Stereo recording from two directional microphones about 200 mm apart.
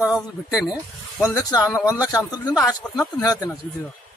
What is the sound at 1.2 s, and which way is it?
Speech, 15° left (ahead or behind).